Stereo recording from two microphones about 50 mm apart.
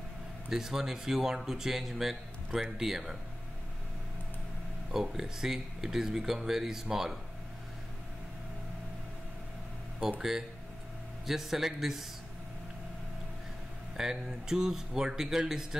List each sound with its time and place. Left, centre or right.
0.5 s speech: centre
4.9 s speech: centre
11.2 s speech: centre
13.9 s speech: centre